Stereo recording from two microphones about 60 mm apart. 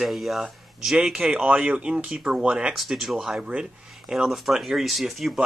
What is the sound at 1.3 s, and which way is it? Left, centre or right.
Speech, right.